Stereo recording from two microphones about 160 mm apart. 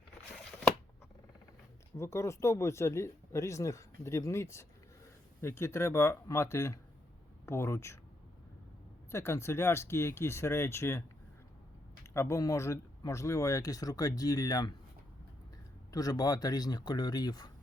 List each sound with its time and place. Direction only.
2.0 s speech: 15° left (ahead or behind)
9.1 s speech: 15° left (ahead or behind)
12.1 s speech: 15° left (ahead or behind)
15.9 s speech: 25° left (ahead or behind)